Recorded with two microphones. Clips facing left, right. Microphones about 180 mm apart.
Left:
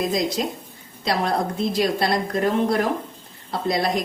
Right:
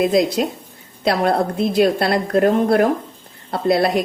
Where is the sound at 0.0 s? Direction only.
65° right (ahead or behind).